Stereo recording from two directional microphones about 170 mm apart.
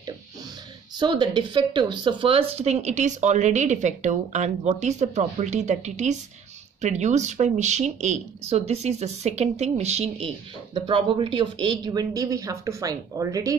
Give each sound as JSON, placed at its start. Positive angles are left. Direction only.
{"t": 0.9, "sound": "speech", "side_deg": -25}